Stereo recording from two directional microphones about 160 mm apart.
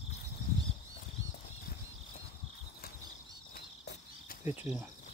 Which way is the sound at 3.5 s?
70° left (ahead or behind).